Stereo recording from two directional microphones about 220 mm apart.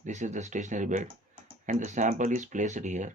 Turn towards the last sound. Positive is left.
turn(degrees=-35)  # may be behind; listen again after turning